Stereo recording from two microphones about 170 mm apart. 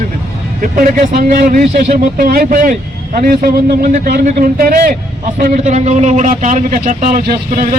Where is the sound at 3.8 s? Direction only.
55° right (ahead or behind).